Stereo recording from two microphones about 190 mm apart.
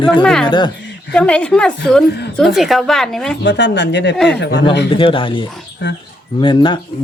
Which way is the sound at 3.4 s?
70° left (ahead or behind).